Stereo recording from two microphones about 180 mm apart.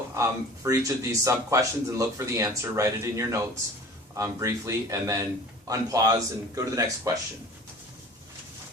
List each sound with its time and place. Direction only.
0.1 s speech: 15° right (ahead or behind)